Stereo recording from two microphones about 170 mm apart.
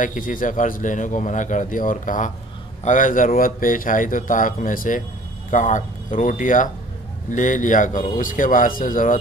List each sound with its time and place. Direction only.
0.0 s speech: 50° left (ahead or behind)